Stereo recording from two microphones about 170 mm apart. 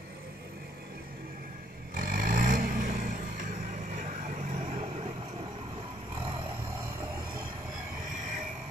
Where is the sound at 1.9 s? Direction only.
55° right (ahead or behind); by 5.1 s 40° right (ahead or behind).